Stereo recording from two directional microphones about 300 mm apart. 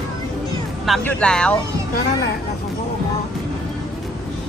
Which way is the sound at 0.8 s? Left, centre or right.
Centre.